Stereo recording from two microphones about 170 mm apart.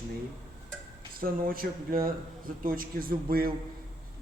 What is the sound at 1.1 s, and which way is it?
Speech, 55° right (ahead or behind).